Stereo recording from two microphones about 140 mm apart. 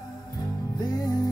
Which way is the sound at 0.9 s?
25° left (ahead or behind).